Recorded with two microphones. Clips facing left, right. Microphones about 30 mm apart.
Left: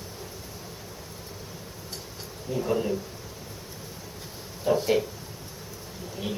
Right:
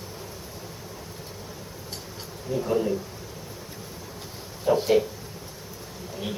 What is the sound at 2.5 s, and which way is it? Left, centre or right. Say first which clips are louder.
Speech: right 2 dB; centre.